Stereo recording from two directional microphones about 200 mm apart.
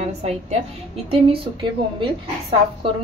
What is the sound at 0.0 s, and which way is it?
A woman's voice, 30° right (ahead or behind).